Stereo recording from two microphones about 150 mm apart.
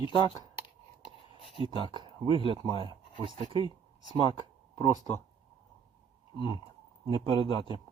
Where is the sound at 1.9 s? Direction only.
30° right (ahead or behind).